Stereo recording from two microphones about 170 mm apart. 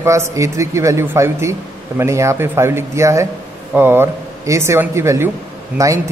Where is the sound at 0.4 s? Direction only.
20° right (ahead or behind).